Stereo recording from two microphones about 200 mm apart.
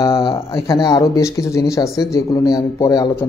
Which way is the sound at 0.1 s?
25° left (ahead or behind).